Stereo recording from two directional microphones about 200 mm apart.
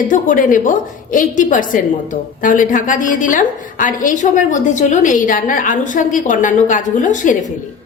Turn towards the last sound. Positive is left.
turn(degrees=40)  # may be behind; listen again after turning